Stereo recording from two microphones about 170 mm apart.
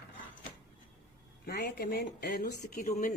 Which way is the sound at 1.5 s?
65° left (ahead or behind).